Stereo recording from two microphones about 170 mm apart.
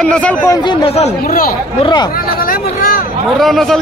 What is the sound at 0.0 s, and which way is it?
Speech, 5° left (ahead or behind).